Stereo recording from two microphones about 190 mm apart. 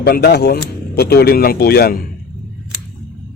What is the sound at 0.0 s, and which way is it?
Speech, 55° left (ahead or behind).